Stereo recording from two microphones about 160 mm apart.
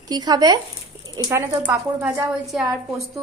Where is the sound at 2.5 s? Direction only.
Centre (ahead or behind).